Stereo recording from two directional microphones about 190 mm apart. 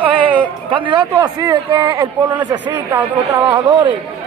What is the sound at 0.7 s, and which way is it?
Speech, 25° right (ahead or behind).